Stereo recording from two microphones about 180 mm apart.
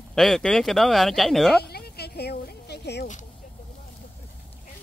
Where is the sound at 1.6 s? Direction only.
60° left (ahead or behind).